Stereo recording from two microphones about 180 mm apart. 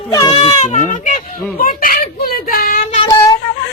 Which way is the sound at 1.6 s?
50° left (ahead or behind).